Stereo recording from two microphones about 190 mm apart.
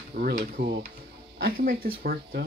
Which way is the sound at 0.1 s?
45° right (ahead or behind).